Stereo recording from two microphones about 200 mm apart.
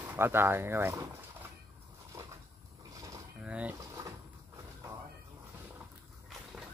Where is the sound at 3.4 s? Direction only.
5° right (ahead or behind).